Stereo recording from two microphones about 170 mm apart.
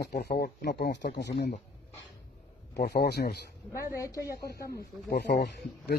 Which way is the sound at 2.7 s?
70° left (ahead or behind).